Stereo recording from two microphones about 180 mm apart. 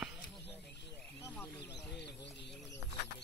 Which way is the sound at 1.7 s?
70° left (ahead or behind).